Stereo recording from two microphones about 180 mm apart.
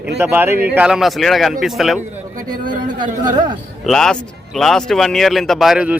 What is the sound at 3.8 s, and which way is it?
Speech, 5° left (ahead or behind).